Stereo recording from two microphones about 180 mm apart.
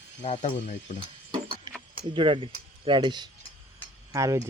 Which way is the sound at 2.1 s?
30° right (ahead or behind).